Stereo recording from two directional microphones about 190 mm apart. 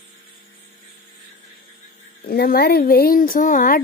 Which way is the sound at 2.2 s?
55° left (ahead or behind).